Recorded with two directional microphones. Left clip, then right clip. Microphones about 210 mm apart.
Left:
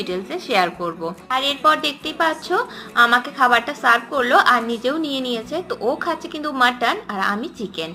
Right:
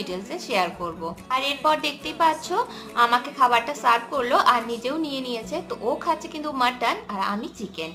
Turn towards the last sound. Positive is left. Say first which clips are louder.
# left 4 dB
turn(degrees=15)  # may be behind; listen again after turning